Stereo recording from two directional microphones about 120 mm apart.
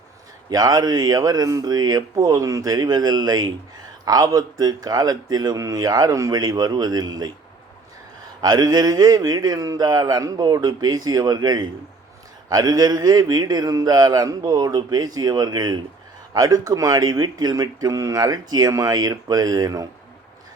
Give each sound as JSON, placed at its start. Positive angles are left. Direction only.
{"t": 0.5, "sound": "speech", "side_deg": -30}
{"t": 8.4, "sound": "speech", "side_deg": -35}